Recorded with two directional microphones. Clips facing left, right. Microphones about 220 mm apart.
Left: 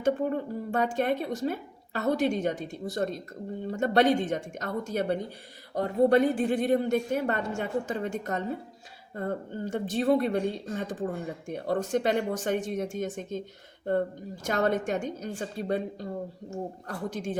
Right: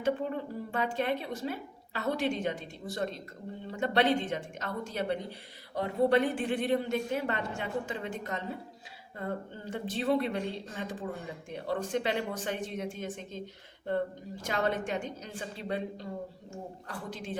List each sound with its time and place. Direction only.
0.0 s speech: 45° left (ahead or behind)
14.4 s speech: 45° left (ahead or behind)